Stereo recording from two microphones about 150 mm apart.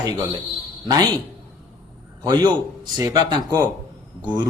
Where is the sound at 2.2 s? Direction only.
30° right (ahead or behind).